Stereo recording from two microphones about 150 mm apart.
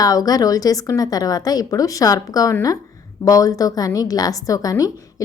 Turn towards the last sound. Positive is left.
turn(degrees=20)  # may be behind; listen again after turning